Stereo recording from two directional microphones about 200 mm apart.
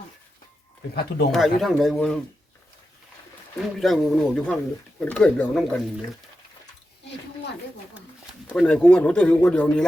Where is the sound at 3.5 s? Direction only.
Centre (ahead or behind).